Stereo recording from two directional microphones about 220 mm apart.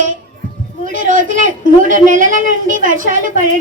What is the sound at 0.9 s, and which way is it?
A woman's voice, 35° right (ahead or behind).